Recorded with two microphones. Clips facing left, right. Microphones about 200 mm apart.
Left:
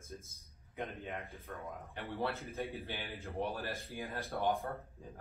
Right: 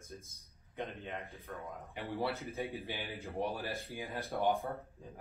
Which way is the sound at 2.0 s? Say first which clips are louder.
Right 2 dB; 15° right (ahead or behind).